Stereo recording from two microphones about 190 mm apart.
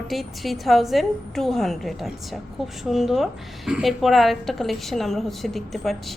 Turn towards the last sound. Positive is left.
turn(degrees=0)  # may be behind; listen again after turning